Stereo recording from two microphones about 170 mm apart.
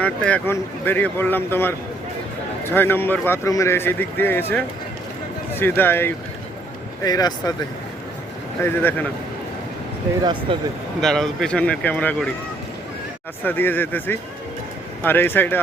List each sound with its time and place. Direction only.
0.0 s speech: 5° left (ahead or behind)
7.0 s speech: 25° left (ahead or behind)
8.6 s speech: 10° left (ahead or behind)
10.5 s speech: 30° right (ahead or behind)
11.0 s speech: centre (ahead or behind)
13.4 s speech: 10° left (ahead or behind)